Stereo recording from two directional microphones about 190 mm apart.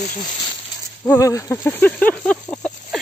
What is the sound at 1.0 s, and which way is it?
Speech, 15° left (ahead or behind).